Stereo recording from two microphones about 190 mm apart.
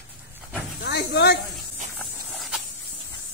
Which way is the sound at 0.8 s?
65° left (ahead or behind).